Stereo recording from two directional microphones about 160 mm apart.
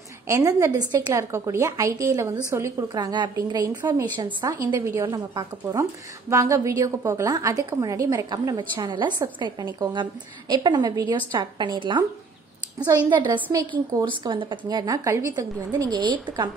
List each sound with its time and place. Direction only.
0.3 s a woman's voice: 20° right (ahead or behind)